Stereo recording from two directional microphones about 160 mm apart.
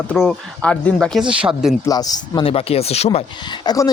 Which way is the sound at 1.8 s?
25° left (ahead or behind).